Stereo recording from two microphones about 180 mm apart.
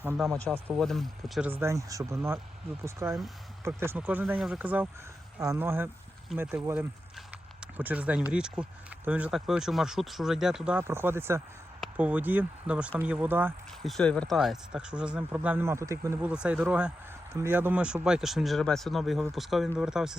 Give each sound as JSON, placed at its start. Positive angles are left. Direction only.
{"t": 0.4, "sound": "speech", "side_deg": -10}
{"t": 0.8, "sound": "speech", "side_deg": 0}
{"t": 1.5, "sound": "speech", "side_deg": -15}
{"t": 13.8, "sound": "speech", "side_deg": 5}
{"t": 16.3, "sound": "speech", "side_deg": -5}